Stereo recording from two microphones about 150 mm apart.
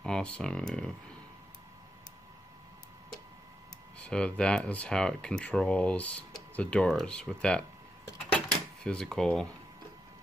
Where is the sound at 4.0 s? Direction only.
5° left (ahead or behind).